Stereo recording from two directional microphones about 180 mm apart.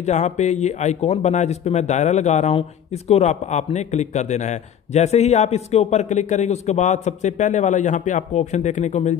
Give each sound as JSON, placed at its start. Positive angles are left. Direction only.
{"t": 0.0, "sound": "speech", "side_deg": 40}